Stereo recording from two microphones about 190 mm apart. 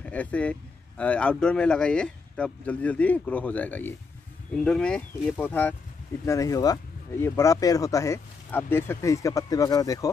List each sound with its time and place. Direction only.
0.0 s speech: 5° left (ahead or behind)